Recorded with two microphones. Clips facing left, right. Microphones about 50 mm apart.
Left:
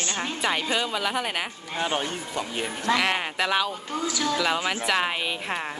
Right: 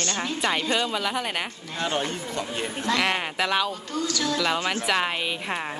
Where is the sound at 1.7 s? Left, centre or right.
Centre.